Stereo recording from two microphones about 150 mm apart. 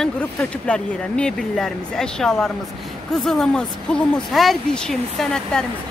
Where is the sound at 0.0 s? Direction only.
5° left (ahead or behind).